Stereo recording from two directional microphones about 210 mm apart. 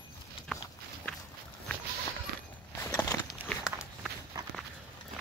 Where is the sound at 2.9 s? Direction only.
15° left (ahead or behind).